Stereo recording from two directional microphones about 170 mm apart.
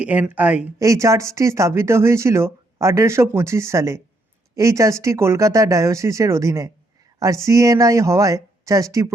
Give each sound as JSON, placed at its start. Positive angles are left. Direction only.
{"t": 0.0, "sound": "speech", "side_deg": -10}